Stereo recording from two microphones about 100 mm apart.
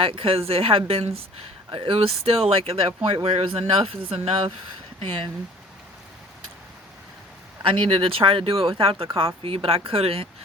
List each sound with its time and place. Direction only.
0.0 s speech: 65° right (ahead or behind); by 1.2 s 80° right
1.7 s speech: 65° right (ahead or behind)
7.6 s speech: 60° right (ahead or behind)